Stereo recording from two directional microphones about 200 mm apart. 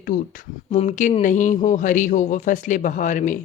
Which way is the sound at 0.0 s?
45° left (ahead or behind).